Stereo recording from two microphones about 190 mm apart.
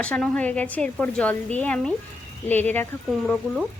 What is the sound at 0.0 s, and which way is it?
A woman's voice, 5° left (ahead or behind).